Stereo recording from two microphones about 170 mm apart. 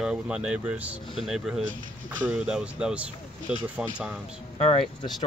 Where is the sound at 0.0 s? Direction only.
5° right (ahead or behind).